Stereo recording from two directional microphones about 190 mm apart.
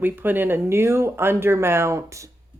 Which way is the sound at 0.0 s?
10° right (ahead or behind).